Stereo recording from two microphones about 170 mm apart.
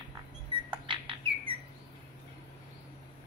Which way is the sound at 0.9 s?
30° right (ahead or behind).